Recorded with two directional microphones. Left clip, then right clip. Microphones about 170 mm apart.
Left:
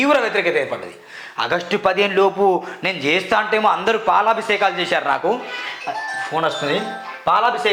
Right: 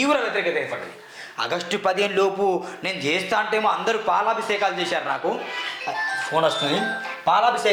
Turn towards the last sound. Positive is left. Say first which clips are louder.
# left 2 dB
turn(degrees=20)  # may be behind; listen again after turning